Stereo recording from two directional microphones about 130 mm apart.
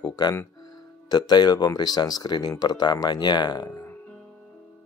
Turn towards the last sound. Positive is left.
turn(degrees=20)  # may be behind; listen again after turning